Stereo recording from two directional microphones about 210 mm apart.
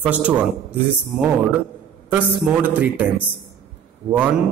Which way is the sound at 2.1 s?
10° right (ahead or behind).